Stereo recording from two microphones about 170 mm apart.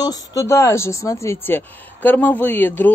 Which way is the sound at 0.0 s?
20° left (ahead or behind).